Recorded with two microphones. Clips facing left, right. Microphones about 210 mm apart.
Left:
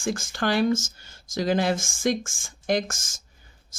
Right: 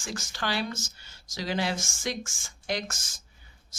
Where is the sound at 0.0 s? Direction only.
50° left (ahead or behind).